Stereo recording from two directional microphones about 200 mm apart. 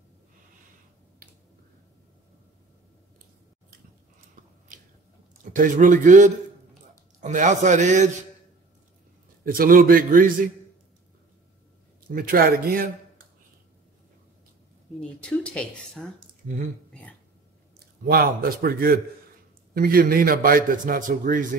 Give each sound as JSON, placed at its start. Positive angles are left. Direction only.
{"t": 4.7, "sound": "squish", "side_deg": -40}
{"t": 5.4, "sound": "a man's voice", "side_deg": -40}
{"t": 9.4, "sound": "a man's voice", "side_deg": -45}
{"t": 12.1, "sound": "a man's voice", "side_deg": -45}
{"t": 15.0, "sound": "speech", "side_deg": 5}
{"t": 17.7, "sound": "a man's voice", "side_deg": -50}